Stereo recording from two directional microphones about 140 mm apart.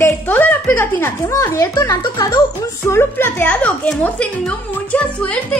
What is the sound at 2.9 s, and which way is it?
A woman's voice, 15° left (ahead or behind).